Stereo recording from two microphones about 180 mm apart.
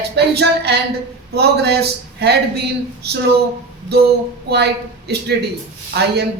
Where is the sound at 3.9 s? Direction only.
65° right (ahead or behind).